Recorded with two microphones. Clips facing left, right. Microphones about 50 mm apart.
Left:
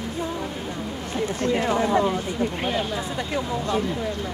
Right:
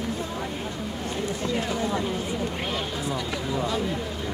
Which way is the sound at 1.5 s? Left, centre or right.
Left.